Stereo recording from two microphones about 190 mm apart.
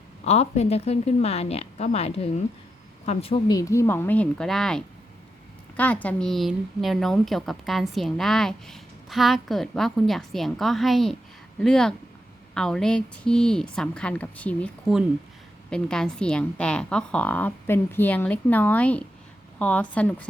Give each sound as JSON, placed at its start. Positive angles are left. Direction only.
{"t": 0.3, "sound": "a woman's voice", "side_deg": 35}
{"t": 3.5, "sound": "a woman's voice", "side_deg": 15}